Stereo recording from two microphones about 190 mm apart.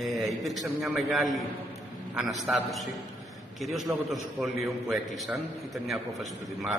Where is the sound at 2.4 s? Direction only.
Centre (ahead or behind).